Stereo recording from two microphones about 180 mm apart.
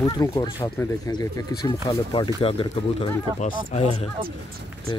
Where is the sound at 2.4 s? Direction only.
30° left (ahead or behind).